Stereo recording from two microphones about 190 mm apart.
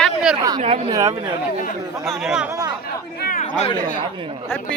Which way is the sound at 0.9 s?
20° right (ahead or behind).